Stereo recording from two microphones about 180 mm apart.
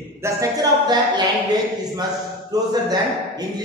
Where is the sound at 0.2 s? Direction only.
20° right (ahead or behind).